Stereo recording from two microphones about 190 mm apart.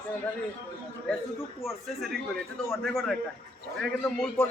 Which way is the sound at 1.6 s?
Centre (ahead or behind).